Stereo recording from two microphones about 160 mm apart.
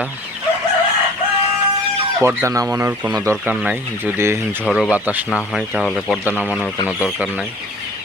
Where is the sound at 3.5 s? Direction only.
5° right (ahead or behind).